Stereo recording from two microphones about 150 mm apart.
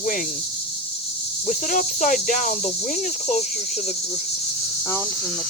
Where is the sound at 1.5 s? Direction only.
55° left (ahead or behind).